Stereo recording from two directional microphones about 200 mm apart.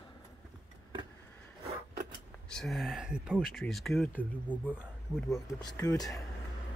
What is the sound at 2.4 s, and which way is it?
Speech, centre (ahead or behind).